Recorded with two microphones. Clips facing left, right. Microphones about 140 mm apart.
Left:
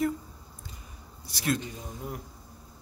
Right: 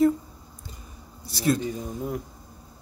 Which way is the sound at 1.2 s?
30° right (ahead or behind).